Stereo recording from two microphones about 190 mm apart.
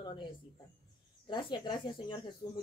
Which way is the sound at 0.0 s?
25° left (ahead or behind).